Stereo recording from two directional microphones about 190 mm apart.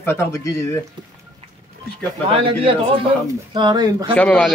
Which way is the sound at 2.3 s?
30° right (ahead or behind).